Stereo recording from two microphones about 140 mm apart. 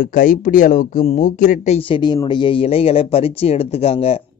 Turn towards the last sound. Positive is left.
turn(degrees=45)  # may be behind; listen again after turning